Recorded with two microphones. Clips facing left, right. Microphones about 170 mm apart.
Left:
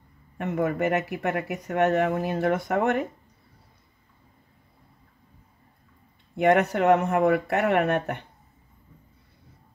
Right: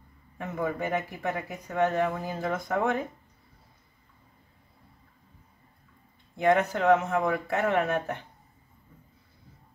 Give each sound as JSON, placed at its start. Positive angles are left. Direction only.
{"t": 0.4, "sound": "speech", "side_deg": 70}
{"t": 6.3, "sound": "speech", "side_deg": 65}